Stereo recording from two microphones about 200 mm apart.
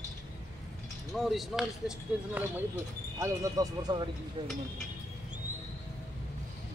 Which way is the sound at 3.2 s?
15° right (ahead or behind).